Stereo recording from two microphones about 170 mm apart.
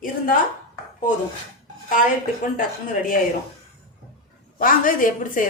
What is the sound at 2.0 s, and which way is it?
Speech, 50° left (ahead or behind).